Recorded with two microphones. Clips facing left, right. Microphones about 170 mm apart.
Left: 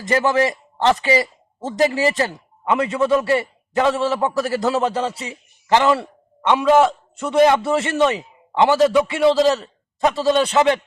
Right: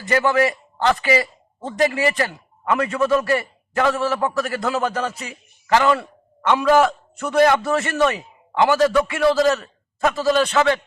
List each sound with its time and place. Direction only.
0.1 s a man's voice: 25° left (ahead or behind)